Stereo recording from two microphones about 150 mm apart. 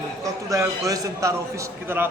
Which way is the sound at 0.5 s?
20° right (ahead or behind).